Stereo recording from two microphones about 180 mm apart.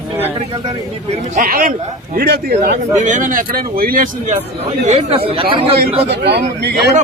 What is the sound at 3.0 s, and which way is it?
Speech, 45° right (ahead or behind).